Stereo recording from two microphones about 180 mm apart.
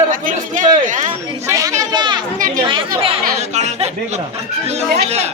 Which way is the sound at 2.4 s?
45° right (ahead or behind).